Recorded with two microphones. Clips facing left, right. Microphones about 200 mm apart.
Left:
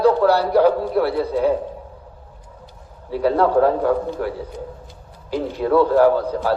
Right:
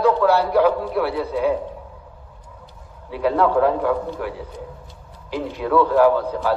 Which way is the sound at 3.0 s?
40° left (ahead or behind).